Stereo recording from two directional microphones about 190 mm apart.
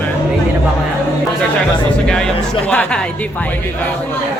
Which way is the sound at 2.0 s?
5° left (ahead or behind).